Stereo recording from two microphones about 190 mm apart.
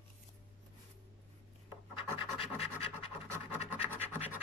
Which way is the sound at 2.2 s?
30° left (ahead or behind).